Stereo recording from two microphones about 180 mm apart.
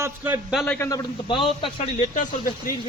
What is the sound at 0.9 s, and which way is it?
Speech, 25° left (ahead or behind).